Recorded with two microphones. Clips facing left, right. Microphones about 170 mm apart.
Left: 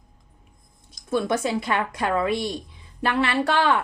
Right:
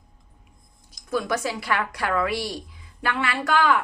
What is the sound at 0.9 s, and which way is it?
A woman's voice, 25° left (ahead or behind).